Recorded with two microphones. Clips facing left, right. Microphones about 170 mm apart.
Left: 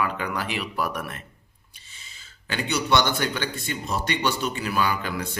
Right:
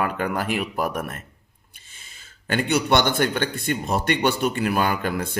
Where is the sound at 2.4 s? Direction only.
50° right (ahead or behind).